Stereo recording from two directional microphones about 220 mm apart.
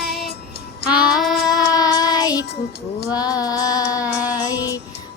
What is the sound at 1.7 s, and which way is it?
Child singing, 15° left (ahead or behind).